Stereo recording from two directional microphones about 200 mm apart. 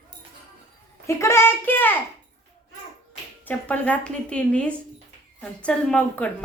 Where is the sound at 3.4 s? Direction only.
5° left (ahead or behind).